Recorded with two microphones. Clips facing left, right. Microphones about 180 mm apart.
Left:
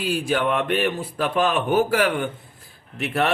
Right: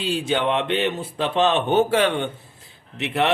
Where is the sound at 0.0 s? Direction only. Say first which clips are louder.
Even; 25° right (ahead or behind).